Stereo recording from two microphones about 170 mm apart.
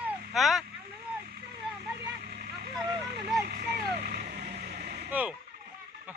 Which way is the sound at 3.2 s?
65° right (ahead or behind).